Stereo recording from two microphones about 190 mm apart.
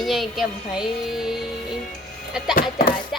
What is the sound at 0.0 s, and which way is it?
Speech, centre (ahead or behind).